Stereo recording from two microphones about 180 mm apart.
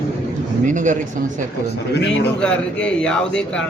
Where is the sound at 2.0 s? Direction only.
75° left (ahead or behind).